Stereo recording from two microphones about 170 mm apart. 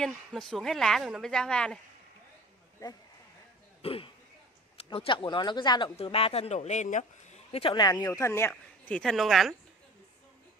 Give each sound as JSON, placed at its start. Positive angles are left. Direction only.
{"t": 0.0, "sound": "a woman's voice", "side_deg": 0}
{"t": 2.8, "sound": "speech", "side_deg": 20}
{"t": 3.8, "sound": "a man's voice", "side_deg": 35}
{"t": 7.9, "sound": "a woman's voice", "side_deg": 15}